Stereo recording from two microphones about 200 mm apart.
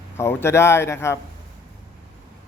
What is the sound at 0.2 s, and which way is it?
Speech, 10° left (ahead or behind).